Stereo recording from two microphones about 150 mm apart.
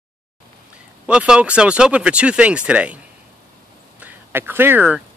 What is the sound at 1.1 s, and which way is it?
Speech, 5° right (ahead or behind).